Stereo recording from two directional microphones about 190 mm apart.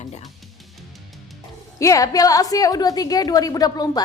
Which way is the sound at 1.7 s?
15° left (ahead or behind).